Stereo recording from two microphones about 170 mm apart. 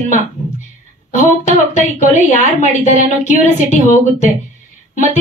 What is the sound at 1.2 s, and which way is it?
A woman's voice, 45° left (ahead or behind).